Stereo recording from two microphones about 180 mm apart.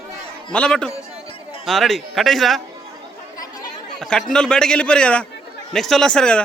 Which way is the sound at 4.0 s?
5° left (ahead or behind).